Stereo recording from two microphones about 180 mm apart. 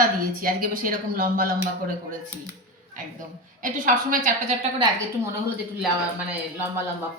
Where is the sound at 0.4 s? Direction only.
50° right (ahead or behind).